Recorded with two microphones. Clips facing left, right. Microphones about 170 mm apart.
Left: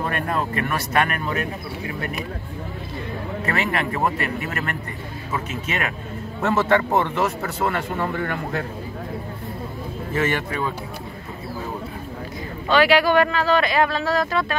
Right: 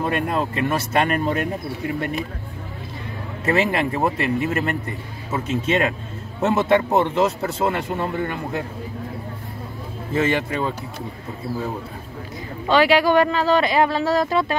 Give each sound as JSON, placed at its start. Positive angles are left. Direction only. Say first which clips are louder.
{"t": 0.0, "sound": "speech", "louder": "right 2 dB", "side_deg": -20}
{"t": 3.4, "sound": "speech", "louder": "right 5 dB", "side_deg": -25}
{"t": 6.4, "sound": "speech", "louder": "right 2 dB", "side_deg": -15}
{"t": 10.1, "sound": "speech", "louder": "right 3 dB", "side_deg": -25}
{"t": 12.6, "sound": "speech", "louder": "right 1 dB", "side_deg": -20}